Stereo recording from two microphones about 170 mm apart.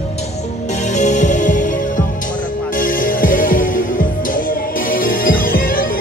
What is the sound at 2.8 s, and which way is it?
Music, 55° left (ahead or behind).